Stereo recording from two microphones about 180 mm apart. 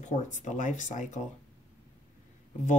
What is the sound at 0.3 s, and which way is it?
Speech, 45° left (ahead or behind).